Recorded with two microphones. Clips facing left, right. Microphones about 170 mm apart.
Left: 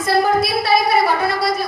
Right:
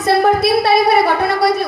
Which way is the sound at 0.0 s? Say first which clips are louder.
Right 3 dB; 65° right (ahead or behind).